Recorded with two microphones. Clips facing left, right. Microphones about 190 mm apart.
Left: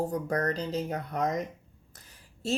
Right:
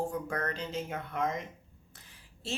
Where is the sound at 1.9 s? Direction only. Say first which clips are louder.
Left 3 dB; 40° left (ahead or behind).